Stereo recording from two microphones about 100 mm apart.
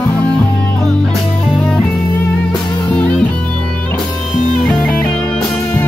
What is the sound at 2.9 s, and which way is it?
Music, 15° left (ahead or behind).